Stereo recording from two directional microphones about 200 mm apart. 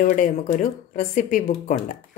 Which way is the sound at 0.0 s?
40° left (ahead or behind).